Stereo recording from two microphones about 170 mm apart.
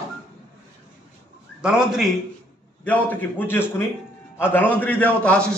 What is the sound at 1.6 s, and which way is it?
Speech, 5° right (ahead or behind).